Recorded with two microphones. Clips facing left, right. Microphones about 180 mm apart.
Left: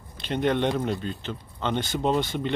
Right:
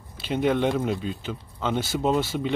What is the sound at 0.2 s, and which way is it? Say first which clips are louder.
Speech: right 1 dB; 5° right (ahead or behind).